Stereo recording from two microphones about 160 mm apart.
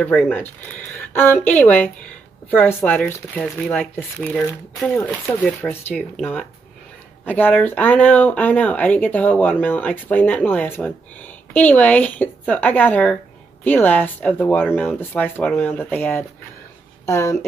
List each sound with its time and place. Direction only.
1.1 s speech: 10° left (ahead or behind)